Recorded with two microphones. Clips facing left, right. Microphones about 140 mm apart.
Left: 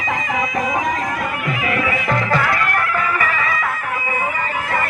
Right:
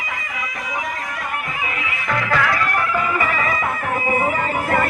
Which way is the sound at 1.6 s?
70° left (ahead or behind).